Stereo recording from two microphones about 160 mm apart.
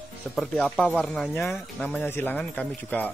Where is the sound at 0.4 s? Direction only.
5° left (ahead or behind).